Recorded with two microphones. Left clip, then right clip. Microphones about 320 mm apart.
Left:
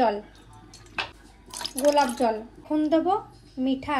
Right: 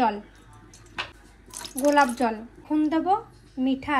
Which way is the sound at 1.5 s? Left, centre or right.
Centre.